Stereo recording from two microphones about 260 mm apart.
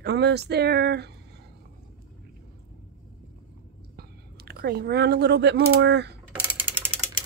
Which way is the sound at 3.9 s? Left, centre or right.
Right.